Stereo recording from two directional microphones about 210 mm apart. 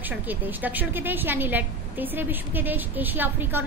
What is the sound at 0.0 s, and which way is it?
A woman's voice, 10° right (ahead or behind).